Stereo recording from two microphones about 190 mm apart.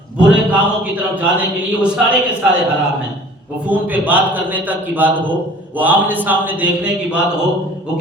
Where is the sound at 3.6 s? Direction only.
10° right (ahead or behind).